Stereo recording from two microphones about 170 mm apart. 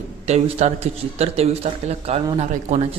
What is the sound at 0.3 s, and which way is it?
A man's voice, 40° right (ahead or behind).